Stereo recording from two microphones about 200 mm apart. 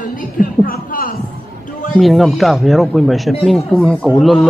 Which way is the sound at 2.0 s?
Centre (ahead or behind).